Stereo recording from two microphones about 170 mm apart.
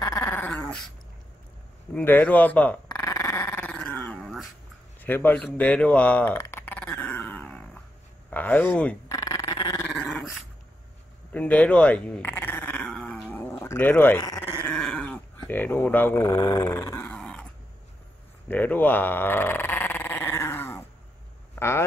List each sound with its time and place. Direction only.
0.0 s dog: 15° left (ahead or behind)
2.0 s speech: 10° left (ahead or behind)
3.0 s dog: 20° left (ahead or behind); by 4.5 s centre (ahead or behind)
5.0 s a sound: 10° left (ahead or behind)
8.3 s speech: 10° left (ahead or behind)
9.1 s dog: 20° left (ahead or behind)
9.9 s dog: 5° left (ahead or behind)
11.3 s dog: 10° left (ahead or behind)
14.7 s dog: 5° left (ahead or behind)
18.5 s dog: 10° left (ahead or behind)
21.5 s speech: 15° left (ahead or behind)